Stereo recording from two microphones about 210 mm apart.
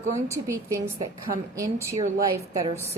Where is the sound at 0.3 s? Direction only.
15° right (ahead or behind).